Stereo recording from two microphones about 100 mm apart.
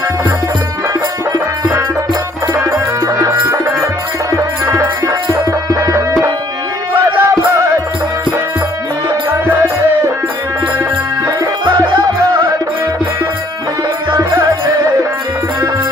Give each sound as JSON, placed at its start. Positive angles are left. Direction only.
{"t": 2.5, "sound": "music", "side_deg": -30}
{"t": 7.2, "sound": "music", "side_deg": -30}
{"t": 9.3, "sound": "music", "side_deg": -25}
{"t": 11.6, "sound": "music", "side_deg": -55}
{"t": 14.1, "sound": "music", "side_deg": -30}